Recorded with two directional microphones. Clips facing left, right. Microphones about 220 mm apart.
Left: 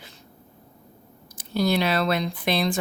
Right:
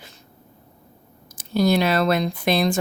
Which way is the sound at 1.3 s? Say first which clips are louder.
Right 4 dB; 45° right (ahead or behind).